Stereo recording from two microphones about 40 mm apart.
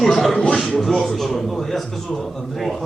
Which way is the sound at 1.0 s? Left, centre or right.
Centre.